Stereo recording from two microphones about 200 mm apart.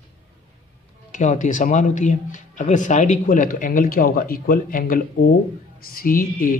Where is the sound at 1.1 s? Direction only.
40° left (ahead or behind).